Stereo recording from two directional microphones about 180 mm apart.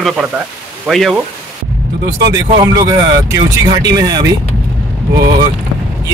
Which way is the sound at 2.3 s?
20° right (ahead or behind).